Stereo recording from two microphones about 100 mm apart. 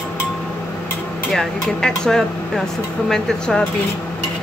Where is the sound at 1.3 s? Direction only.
5° left (ahead or behind).